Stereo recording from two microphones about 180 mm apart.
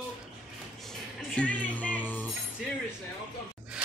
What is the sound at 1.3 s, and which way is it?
Music, 5° left (ahead or behind).